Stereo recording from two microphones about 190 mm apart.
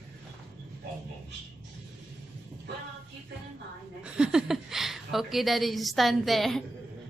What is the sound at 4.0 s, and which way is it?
A woman's voice, 5° right (ahead or behind).